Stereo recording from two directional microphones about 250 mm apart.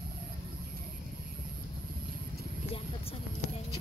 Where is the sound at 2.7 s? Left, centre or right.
Left.